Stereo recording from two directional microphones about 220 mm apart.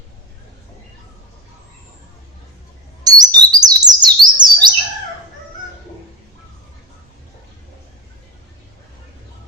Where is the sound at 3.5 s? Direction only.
20° right (ahead or behind).